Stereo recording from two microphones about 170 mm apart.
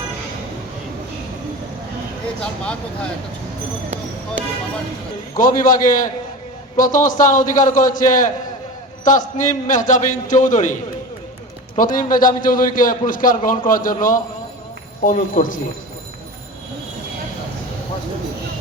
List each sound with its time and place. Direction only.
2.4 s speech: 5° left (ahead or behind)
5.4 s a man's voice: 55° left (ahead or behind)
11.8 s a man's voice: 50° left (ahead or behind)